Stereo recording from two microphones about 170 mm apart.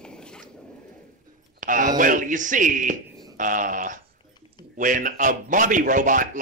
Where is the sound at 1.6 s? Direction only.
50° right (ahead or behind).